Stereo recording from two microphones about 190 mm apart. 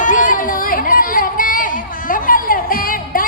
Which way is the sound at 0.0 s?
45° left (ahead or behind).